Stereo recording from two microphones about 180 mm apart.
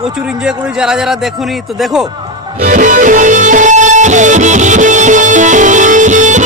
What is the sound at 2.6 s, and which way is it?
Music, 45° right (ahead or behind).